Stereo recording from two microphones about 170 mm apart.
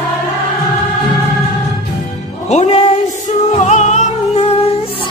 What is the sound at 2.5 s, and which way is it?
Speech, 40° left (ahead or behind).